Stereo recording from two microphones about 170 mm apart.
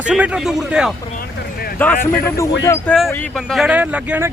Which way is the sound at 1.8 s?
10° left (ahead or behind).